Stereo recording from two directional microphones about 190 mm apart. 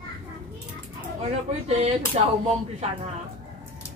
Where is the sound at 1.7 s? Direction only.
35° right (ahead or behind).